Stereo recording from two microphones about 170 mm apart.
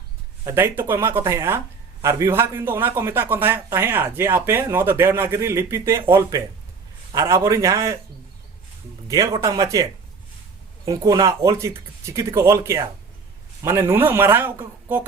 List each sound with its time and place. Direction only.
0.4 s a man's voice: 15° right (ahead or behind)
9.0 s a man's voice: 20° right (ahead or behind)
10.8 s speech: 20° right (ahead or behind)